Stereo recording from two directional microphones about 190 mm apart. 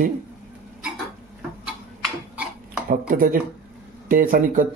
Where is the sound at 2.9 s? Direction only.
50° right (ahead or behind).